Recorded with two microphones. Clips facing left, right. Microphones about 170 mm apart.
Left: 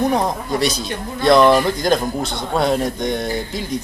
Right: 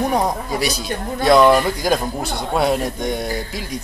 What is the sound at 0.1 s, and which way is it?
A man's voice, 10° right (ahead or behind).